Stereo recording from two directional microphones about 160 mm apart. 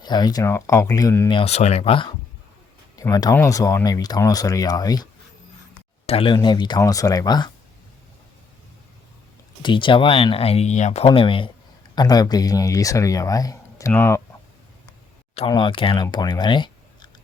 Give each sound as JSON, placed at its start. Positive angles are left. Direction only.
{"t": 0.0, "sound": "speech", "side_deg": 25}
{"t": 1.3, "sound": "speech", "side_deg": 35}
{"t": 2.9, "sound": "speech", "side_deg": 25}
{"t": 6.1, "sound": "speech", "side_deg": 35}
{"t": 9.6, "sound": "speech", "side_deg": 30}
{"t": 15.4, "sound": "speech", "side_deg": 30}